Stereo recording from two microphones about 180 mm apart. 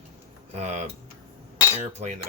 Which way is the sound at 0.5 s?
35° right (ahead or behind).